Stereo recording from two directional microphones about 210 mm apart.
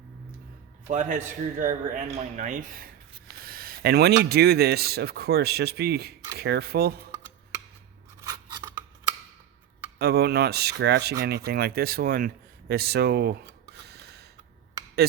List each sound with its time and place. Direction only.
0.9 s a man's voice: 35° right (ahead or behind)
3.4 s a sound: 45° right (ahead or behind)
4.2 s speech: 50° right (ahead or behind)
8.2 s scissors: 15° right (ahead or behind)
10.0 s speech: 50° right (ahead or behind)
13.7 s a sound: 50° right (ahead or behind)